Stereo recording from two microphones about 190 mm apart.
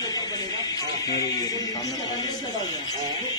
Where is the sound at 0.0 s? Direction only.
20° left (ahead or behind).